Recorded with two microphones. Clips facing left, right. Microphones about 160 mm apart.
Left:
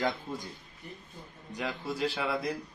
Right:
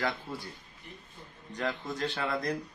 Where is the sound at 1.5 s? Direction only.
10° left (ahead or behind).